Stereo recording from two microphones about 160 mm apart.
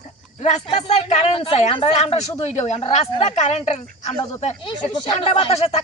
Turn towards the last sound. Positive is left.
turn(degrees=40)  # may be behind; listen again after turning